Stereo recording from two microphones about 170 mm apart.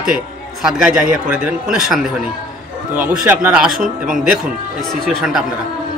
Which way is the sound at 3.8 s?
55° right (ahead or behind).